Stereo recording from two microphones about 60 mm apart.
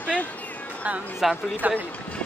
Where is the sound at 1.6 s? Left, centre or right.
Right.